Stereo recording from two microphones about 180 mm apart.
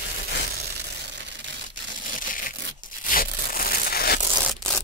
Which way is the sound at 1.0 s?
75° right (ahead or behind).